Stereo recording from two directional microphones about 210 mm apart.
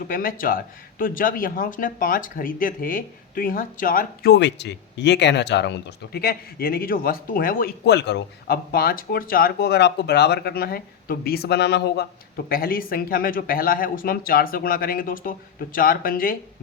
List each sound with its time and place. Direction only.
0.0 s speech: 45° left (ahead or behind)